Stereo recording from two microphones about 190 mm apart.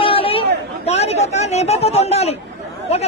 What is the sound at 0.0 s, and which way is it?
Chatter, 30° left (ahead or behind).